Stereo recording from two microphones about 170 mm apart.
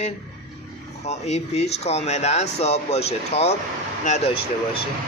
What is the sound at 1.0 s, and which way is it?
Speech, 40° left (ahead or behind).